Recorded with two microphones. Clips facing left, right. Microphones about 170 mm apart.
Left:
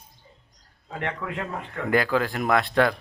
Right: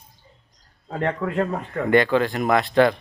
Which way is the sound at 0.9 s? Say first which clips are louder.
Right 8 dB; 40° right (ahead or behind).